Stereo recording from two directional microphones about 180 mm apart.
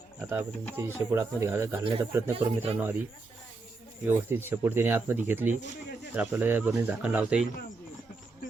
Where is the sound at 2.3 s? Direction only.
30° right (ahead or behind).